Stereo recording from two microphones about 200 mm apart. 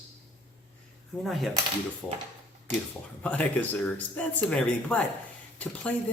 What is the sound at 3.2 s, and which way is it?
Speech, 10° left (ahead or behind).